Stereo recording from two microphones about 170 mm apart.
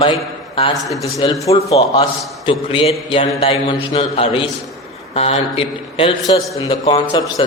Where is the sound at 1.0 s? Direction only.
20° left (ahead or behind).